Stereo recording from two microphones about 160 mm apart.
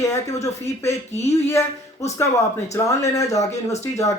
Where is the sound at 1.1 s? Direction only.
40° left (ahead or behind).